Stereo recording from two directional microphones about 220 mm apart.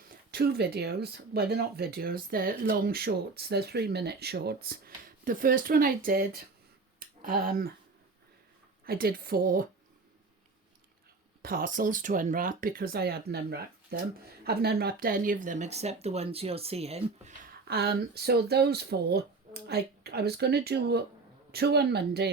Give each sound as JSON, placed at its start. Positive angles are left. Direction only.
{"t": 0.1, "sound": "speech", "side_deg": -45}
{"t": 8.8, "sound": "speech", "side_deg": -40}
{"t": 11.4, "sound": "speech", "side_deg": -40}